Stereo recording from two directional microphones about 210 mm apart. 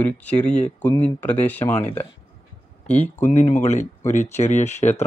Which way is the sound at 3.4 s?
35° left (ahead or behind).